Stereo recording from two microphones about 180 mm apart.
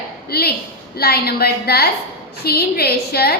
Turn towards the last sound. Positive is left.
turn(degrees=60)  # may be behind; listen again after turning